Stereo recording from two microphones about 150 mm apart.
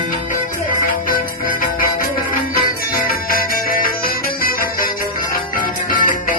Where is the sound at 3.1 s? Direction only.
75° left (ahead or behind).